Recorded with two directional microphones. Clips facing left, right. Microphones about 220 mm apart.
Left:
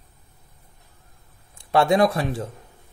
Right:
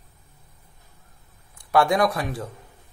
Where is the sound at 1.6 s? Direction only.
25° left (ahead or behind).